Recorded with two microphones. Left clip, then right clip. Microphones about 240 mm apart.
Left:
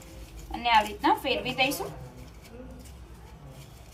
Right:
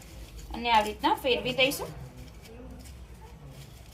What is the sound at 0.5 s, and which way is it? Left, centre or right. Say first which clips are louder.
Speech: left 1 dB; centre.